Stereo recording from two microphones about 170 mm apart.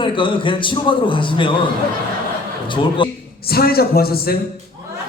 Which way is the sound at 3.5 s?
65° left (ahead or behind).